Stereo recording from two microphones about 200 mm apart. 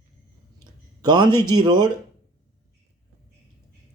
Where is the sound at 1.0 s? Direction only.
20° right (ahead or behind).